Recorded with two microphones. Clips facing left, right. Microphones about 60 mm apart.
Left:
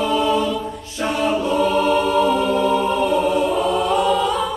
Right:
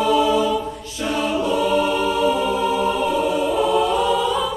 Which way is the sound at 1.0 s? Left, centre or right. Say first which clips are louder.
Left 2 dB; left.